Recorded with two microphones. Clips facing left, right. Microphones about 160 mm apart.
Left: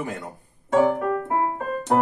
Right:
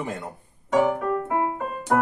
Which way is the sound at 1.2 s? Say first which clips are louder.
Left 1 dB; 40° left (ahead or behind).